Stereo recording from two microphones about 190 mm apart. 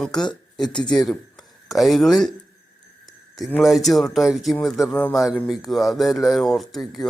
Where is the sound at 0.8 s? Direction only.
20° left (ahead or behind).